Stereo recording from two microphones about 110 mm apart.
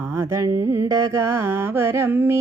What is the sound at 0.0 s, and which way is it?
Speech, 25° right (ahead or behind).